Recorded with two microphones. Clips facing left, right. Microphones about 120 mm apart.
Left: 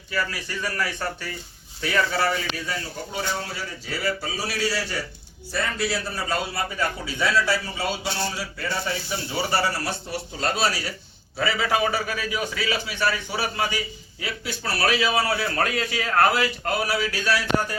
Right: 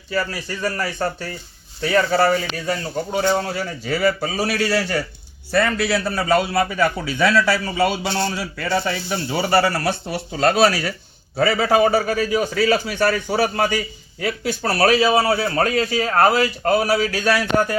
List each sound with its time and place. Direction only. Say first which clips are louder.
0.1 s a man's voice: right 4 dB; 35° right (ahead or behind); by 10.9 s 60° right (ahead or behind)
11.3 s a man's voice: right 7 dB; 45° right (ahead or behind)